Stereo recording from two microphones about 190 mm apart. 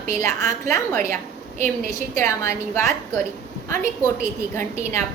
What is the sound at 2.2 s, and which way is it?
Speech, 15° left (ahead or behind).